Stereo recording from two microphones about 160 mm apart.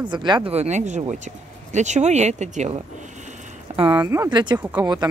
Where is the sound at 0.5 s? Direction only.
45° right (ahead or behind).